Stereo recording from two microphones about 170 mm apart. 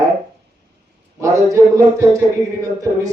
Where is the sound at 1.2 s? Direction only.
15° right (ahead or behind).